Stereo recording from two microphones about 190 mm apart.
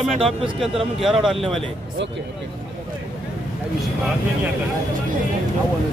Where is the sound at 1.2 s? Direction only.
Centre (ahead or behind).